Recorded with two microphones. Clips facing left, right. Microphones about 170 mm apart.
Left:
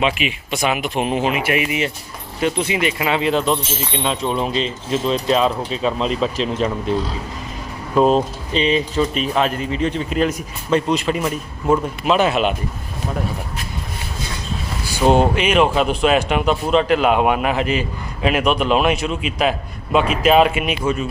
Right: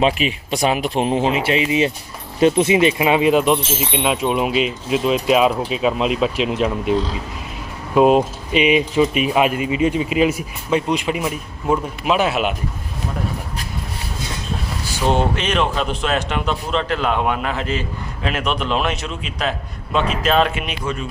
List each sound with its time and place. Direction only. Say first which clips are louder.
0.0 s speech: right 2 dB; 35° right (ahead or behind); by 6.9 s 5° right (ahead or behind)
7.9 s speech: right 2 dB; 10° right (ahead or behind)
15.0 s a man's voice: left 4 dB; 10° left (ahead or behind)